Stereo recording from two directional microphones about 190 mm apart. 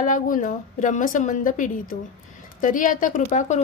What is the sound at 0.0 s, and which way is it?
A woman's voice, 45° left (ahead or behind).